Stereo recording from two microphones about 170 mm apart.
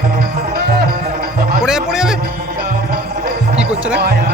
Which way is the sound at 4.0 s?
75° right (ahead or behind).